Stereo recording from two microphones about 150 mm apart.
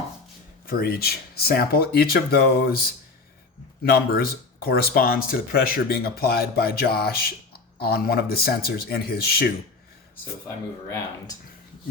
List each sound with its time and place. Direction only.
0.6 s speech: 85° left